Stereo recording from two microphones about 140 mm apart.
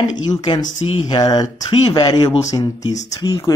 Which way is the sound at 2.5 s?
25° left (ahead or behind).